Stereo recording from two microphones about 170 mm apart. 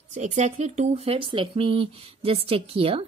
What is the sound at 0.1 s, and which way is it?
Speech, 40° right (ahead or behind).